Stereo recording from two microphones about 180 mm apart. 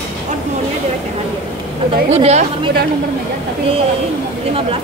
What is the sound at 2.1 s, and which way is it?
Speech, 35° right (ahead or behind).